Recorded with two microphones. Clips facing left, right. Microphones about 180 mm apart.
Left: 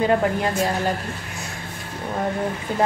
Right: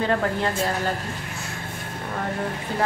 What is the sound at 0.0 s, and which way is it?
Speech, 15° left (ahead or behind).